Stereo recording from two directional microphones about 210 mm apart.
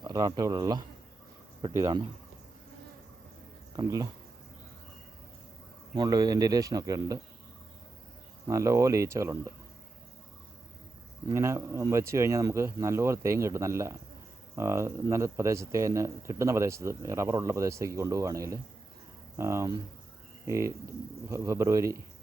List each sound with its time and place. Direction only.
0.0 s speech: 20° right (ahead or behind)
3.8 s speech: 20° right (ahead or behind)
5.9 s speech: 20° right (ahead or behind)
8.4 s speech: 15° right (ahead or behind)
11.3 s speech: 15° right (ahead or behind)